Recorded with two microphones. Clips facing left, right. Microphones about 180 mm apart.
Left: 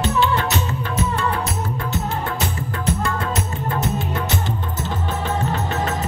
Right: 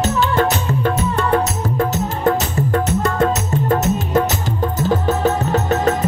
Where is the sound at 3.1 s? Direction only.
45° right (ahead or behind).